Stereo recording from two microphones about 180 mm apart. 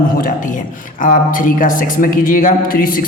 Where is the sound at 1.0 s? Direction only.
50° left (ahead or behind).